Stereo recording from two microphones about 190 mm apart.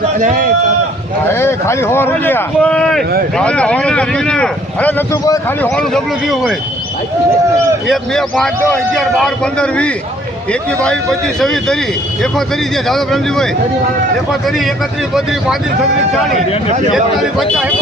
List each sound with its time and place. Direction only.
0.2 s a man's voice: 45° right (ahead or behind)
1.3 s a man's voice: 15° left (ahead or behind)
5.7 s a man's voice: 5° left (ahead or behind)
7.9 s a man's voice: centre (ahead or behind)
11.3 s a man's voice: centre (ahead or behind)
16.9 s a man's voice: centre (ahead or behind)